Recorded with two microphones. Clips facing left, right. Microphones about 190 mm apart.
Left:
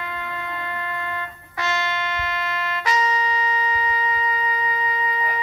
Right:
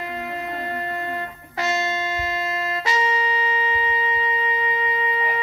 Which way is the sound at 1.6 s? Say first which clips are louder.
Right 2 dB; 25° right (ahead or behind).